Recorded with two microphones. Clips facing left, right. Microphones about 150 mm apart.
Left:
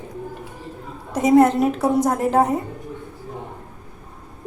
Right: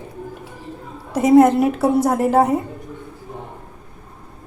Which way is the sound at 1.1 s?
10° right (ahead or behind).